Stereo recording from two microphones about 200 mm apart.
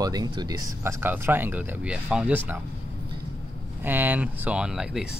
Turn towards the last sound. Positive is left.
turn(degrees=-5)  # may be behind; listen again after turning